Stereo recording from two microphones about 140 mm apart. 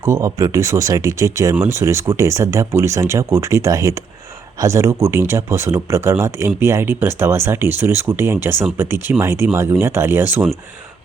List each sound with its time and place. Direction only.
0.0 s speech: 25° right (ahead or behind)